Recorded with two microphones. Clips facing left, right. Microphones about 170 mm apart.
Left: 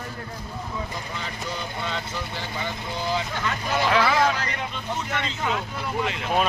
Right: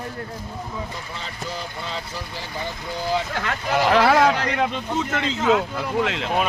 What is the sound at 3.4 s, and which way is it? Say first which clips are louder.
Speech: right 3 dB; 50° right (ahead or behind).